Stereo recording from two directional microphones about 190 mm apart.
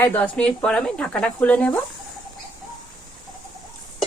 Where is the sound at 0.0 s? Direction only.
10° left (ahead or behind).